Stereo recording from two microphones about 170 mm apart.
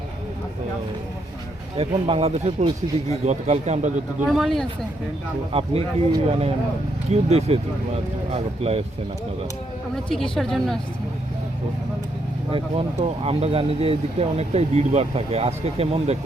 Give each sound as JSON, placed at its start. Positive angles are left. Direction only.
{"t": 1.7, "sound": "a man's voice", "side_deg": -35}
{"t": 4.3, "sound": "a woman's voice", "side_deg": 0}
{"t": 5.5, "sound": "speech", "side_deg": -35}
{"t": 10.3, "sound": "a woman's voice", "side_deg": 0}
{"t": 12.5, "sound": "speech", "side_deg": -35}